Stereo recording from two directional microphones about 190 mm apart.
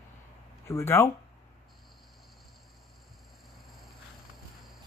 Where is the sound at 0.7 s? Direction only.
15° left (ahead or behind).